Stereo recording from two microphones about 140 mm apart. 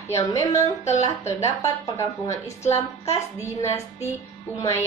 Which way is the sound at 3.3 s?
20° left (ahead or behind).